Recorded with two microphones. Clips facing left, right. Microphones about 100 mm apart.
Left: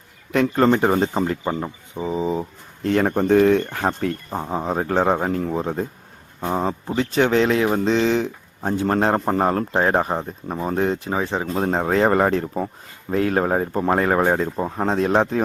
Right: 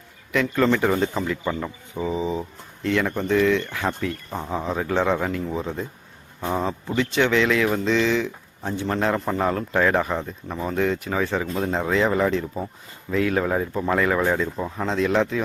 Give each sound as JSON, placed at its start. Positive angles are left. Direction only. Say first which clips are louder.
{"t": 0.3, "sound": "speech", "louder": "left 3 dB", "side_deg": 40}
{"t": 6.4, "sound": "speech", "louder": "left 2 dB", "side_deg": 40}